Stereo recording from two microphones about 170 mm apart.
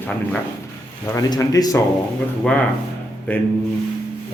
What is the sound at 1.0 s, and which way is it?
Speech, 20° left (ahead or behind).